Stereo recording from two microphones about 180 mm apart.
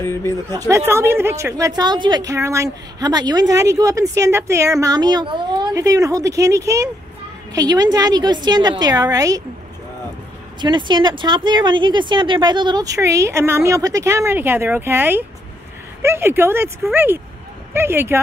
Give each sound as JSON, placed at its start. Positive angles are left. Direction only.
{"t": 0.0, "sound": "speech", "side_deg": 15}
{"t": 0.5, "sound": "a woman's voice", "side_deg": -20}
{"t": 10.6, "sound": "a woman's voice", "side_deg": -25}